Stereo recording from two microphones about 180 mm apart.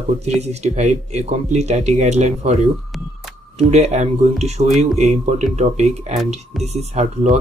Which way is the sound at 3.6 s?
35° right (ahead or behind).